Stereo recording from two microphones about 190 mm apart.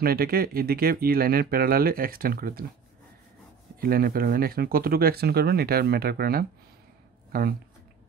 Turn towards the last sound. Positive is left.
turn(degrees=-50)  # may be behind; listen again after turning